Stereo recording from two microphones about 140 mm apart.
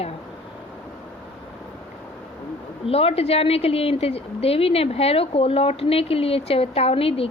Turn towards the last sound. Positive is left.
turn(degrees=45)  # may be behind; listen again after turning